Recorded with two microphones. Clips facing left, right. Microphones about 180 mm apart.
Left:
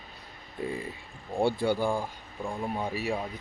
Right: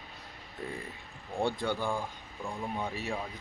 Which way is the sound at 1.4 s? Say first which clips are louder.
Left 5 dB; 10° left (ahead or behind).